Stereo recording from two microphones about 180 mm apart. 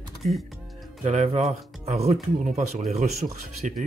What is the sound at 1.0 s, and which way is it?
Speech, 40° right (ahead or behind).